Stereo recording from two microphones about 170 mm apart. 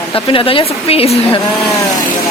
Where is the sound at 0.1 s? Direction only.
30° left (ahead or behind).